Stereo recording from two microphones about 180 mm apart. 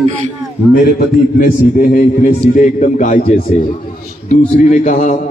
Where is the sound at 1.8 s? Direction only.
50° left (ahead or behind).